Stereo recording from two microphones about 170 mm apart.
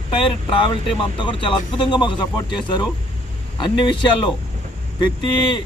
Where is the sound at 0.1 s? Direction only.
30° left (ahead or behind).